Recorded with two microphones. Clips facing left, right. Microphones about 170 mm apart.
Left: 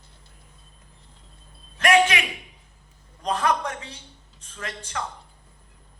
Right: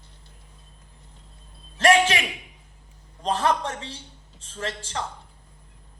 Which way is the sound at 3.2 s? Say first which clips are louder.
Right 1 dB; 30° right (ahead or behind).